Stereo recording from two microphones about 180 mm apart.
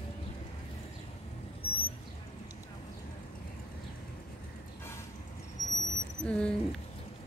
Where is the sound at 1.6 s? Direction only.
30° left (ahead or behind).